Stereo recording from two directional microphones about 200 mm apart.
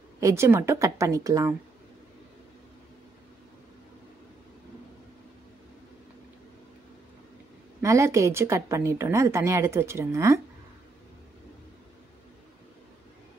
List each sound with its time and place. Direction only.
0.2 s a woman's voice: 15° right (ahead or behind)
7.8 s a woman's voice: 15° right (ahead or behind)